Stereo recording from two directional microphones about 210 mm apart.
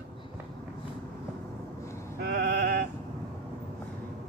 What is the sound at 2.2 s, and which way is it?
Sheep, 50° right (ahead or behind).